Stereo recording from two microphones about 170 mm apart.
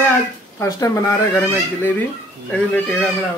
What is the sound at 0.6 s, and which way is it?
Speech, 15° left (ahead or behind).